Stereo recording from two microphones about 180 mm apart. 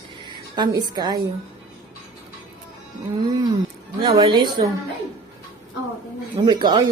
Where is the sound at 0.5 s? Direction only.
25° right (ahead or behind).